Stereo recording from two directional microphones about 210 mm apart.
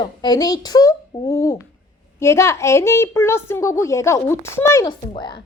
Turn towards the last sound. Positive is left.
turn(degrees=20)  # may be behind; listen again after turning